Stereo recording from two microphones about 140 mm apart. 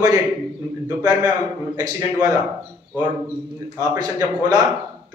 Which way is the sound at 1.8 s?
25° right (ahead or behind).